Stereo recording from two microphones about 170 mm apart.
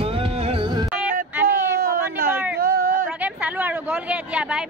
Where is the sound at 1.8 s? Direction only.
60° right (ahead or behind).